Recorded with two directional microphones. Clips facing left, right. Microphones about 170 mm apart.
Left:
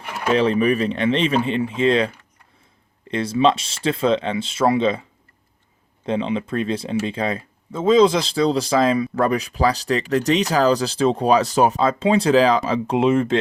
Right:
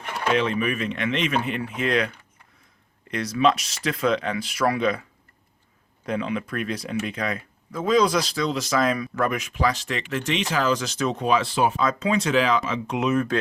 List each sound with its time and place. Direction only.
0.3 s speech: 35° left (ahead or behind)
3.1 s speech: 30° left (ahead or behind)
6.1 s speech: 25° left (ahead or behind)